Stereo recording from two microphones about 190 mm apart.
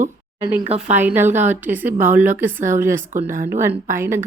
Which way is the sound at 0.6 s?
35° right (ahead or behind).